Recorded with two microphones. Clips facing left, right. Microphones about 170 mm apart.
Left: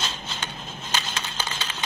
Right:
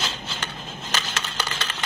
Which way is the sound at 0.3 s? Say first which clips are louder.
Right 1 dB; 75° right (ahead or behind).